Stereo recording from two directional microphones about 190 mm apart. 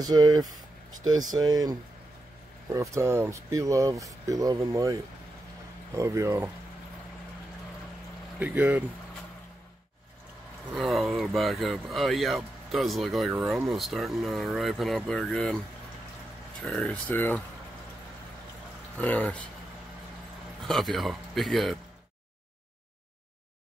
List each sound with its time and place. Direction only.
0.0 s speech: 20° right (ahead or behind)
5.9 s speech: 15° right (ahead or behind)
8.4 s speech: 10° right (ahead or behind)
10.7 s speech: centre (ahead or behind)
16.6 s speech: 5° left (ahead or behind)
18.9 s speech: 5° left (ahead or behind)
20.6 s speech: centre (ahead or behind)